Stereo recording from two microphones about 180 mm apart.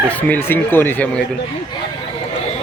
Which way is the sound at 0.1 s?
10° left (ahead or behind).